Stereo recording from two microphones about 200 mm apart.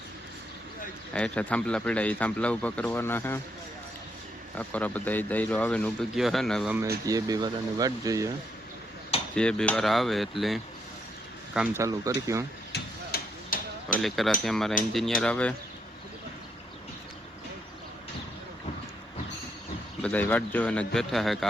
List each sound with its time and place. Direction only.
1.1 s speech: 5° left (ahead or behind)
4.5 s speech: 10° left (ahead or behind)
7.0 s speech: 15° right (ahead or behind)
9.3 s a man's voice: 5° left (ahead or behind)
11.8 s speech: 15° right (ahead or behind)
12.7 s a sound: 50° left (ahead or behind)
14.0 s a man's voice: centre (ahead or behind)
20.0 s a man's voice: 5° left (ahead or behind)